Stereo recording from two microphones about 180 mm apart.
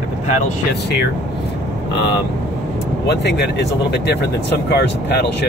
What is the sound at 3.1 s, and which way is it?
Speech, 65° left (ahead or behind).